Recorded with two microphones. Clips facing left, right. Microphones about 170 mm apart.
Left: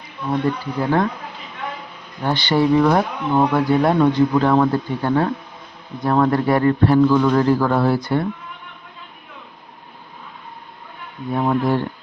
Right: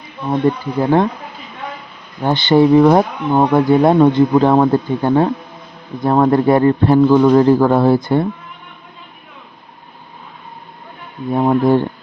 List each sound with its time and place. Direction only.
0.3 s speech: 25° right (ahead or behind)
2.2 s speech: 25° right (ahead or behind)
11.3 s speech: 25° right (ahead or behind)